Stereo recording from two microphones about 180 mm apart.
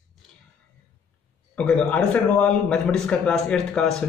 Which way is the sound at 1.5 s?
5° left (ahead or behind).